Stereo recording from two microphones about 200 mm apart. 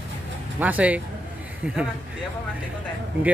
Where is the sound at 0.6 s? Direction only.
10° right (ahead or behind).